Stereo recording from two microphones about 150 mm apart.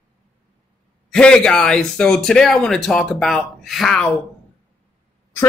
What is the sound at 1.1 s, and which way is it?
Speech, 5° left (ahead or behind).